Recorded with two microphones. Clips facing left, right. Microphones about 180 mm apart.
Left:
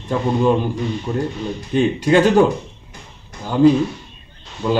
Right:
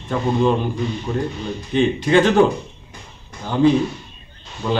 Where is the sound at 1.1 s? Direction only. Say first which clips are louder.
Left 1 dB; 15° left (ahead or behind).